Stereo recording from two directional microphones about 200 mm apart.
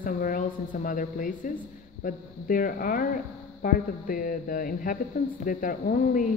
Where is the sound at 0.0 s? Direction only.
45° left (ahead or behind).